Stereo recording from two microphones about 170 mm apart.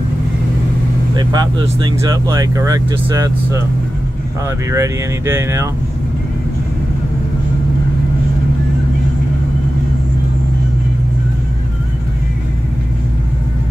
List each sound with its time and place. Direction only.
1.1 s speech: 25° right (ahead or behind)
4.6 s speech: 15° right (ahead or behind)